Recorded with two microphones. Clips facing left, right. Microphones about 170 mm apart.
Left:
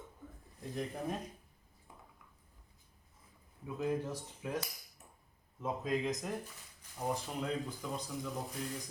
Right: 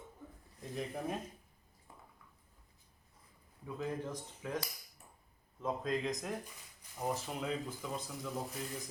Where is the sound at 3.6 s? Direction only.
5° left (ahead or behind).